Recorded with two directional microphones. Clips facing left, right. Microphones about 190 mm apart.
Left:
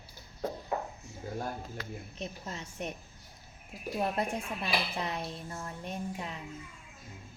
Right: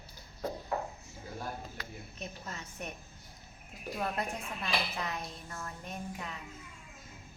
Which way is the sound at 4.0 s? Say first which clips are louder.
Left 4 dB; 30° left (ahead or behind).